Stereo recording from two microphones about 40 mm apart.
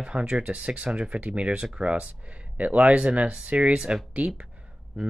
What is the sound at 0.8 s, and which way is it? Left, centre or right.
Speech, centre.